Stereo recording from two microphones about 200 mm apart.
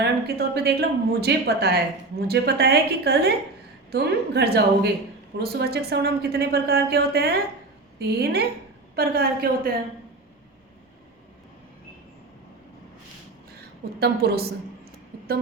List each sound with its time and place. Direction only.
0.0 s a woman's voice: 55° right (ahead or behind)
14.0 s speech: 50° right (ahead or behind)